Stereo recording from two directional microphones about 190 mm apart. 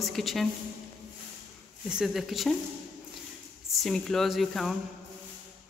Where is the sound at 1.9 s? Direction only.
Centre (ahead or behind).